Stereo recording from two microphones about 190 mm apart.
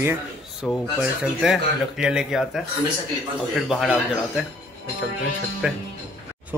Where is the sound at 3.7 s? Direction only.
Centre (ahead or behind).